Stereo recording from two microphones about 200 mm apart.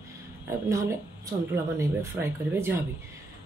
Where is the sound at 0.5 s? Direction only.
15° right (ahead or behind).